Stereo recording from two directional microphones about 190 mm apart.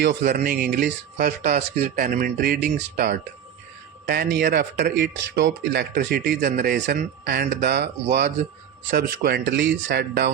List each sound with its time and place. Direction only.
0.0 s speech: 60° right (ahead or behind)
0.3 s speech: 45° right (ahead or behind)
0.5 s speech: 60° right (ahead or behind)
1.1 s speech: 40° right (ahead or behind)
1.6 s speech: 60° right (ahead or behind)
6.4 s speech: 50° right (ahead or behind)
6.7 s speech: 60° right (ahead or behind)